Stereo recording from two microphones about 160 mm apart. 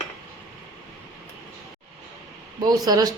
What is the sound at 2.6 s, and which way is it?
Speech, 25° right (ahead or behind).